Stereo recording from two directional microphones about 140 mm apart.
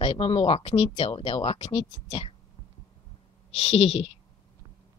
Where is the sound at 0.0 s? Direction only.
40° left (ahead or behind).